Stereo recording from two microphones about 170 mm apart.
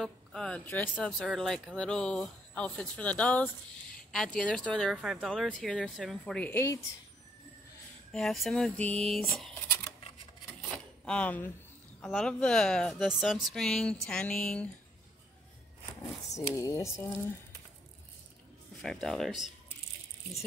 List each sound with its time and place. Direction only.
0.0 s speech: 5° left (ahead or behind)
8.1 s speech: centre (ahead or behind)
11.1 s speech: 10° left (ahead or behind)
16.0 s speech: 20° left (ahead or behind)
18.8 s speech: centre (ahead or behind)